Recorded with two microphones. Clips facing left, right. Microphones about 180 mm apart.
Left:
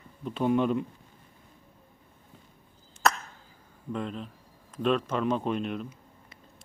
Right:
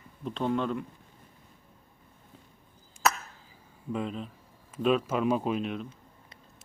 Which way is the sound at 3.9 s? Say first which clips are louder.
Right 1 dB; centre (ahead or behind).